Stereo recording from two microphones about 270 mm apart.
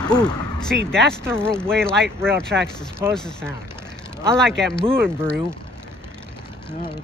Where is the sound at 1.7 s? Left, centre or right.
Centre.